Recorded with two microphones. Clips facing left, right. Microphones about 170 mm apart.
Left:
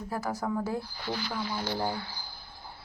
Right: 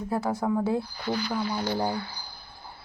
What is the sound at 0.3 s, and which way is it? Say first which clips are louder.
Speech: right 5 dB; 20° right (ahead or behind).